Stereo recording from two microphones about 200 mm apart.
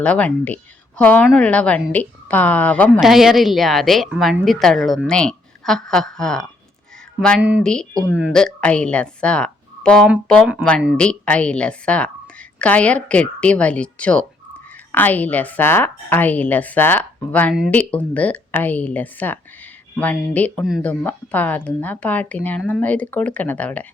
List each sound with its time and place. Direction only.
0.0 s speech: 5° left (ahead or behind)